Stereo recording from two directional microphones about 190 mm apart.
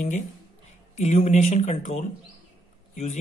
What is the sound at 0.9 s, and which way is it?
Speech, 35° left (ahead or behind).